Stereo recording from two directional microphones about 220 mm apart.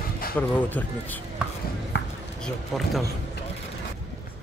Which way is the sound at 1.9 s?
45° left (ahead or behind).